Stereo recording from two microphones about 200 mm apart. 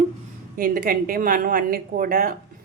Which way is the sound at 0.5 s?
45° right (ahead or behind).